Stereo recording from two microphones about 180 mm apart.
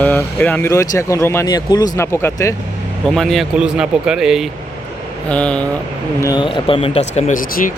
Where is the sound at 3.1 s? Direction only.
Centre (ahead or behind).